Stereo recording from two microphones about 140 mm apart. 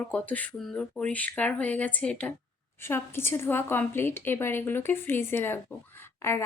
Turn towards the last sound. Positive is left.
turn(degrees=20)  # may be behind; listen again after turning